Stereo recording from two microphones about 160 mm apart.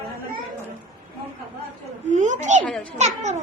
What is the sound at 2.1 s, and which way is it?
Speech, 50° right (ahead or behind).